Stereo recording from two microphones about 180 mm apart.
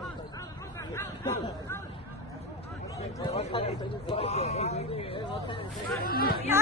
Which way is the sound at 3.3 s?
35° left (ahead or behind).